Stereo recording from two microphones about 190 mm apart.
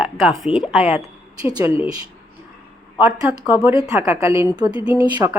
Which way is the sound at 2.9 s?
5° right (ahead or behind).